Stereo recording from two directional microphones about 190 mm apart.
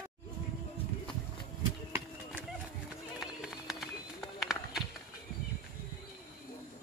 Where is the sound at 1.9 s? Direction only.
10° right (ahead or behind).